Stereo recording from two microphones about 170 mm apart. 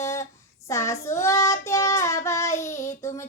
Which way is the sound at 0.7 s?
15° left (ahead or behind).